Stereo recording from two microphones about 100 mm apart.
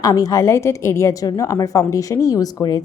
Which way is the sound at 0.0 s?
40° left (ahead or behind).